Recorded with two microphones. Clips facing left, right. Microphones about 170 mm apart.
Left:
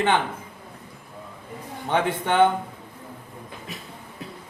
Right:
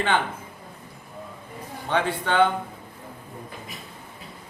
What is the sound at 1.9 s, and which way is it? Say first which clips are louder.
Speech: left 1 dB; 20° left (ahead or behind).